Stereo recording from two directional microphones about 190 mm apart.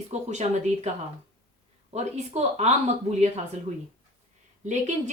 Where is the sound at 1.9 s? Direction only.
35° right (ahead or behind).